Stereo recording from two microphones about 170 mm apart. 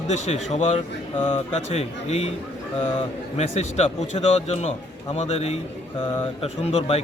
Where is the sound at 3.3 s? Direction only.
40° left (ahead or behind).